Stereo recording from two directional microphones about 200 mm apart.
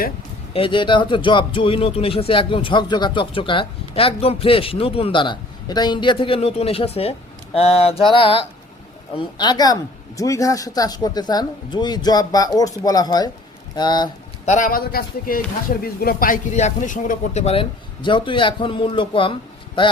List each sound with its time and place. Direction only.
0.5 s speech: 25° left (ahead or behind)
14.4 s speech: 40° left (ahead or behind)